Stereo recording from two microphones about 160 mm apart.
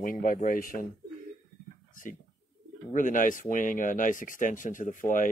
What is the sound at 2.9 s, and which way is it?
Speech, 55° left (ahead or behind).